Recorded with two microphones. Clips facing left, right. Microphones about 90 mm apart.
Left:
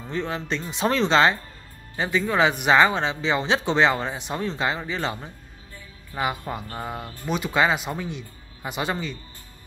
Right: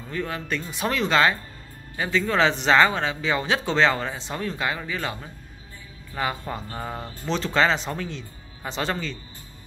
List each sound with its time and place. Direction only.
0.1 s speech: 25° left (ahead or behind)